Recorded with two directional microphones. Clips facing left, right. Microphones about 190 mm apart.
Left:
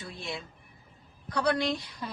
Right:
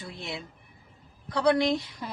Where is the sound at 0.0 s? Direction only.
20° right (ahead or behind).